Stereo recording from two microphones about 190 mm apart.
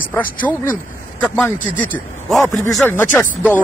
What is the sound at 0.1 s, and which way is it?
Speech, 10° left (ahead or behind).